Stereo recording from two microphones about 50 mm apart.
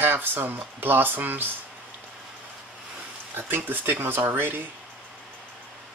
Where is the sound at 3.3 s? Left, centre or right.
Right.